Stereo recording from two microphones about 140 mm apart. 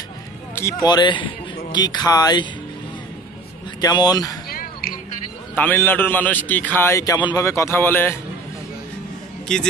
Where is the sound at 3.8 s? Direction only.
30° left (ahead or behind).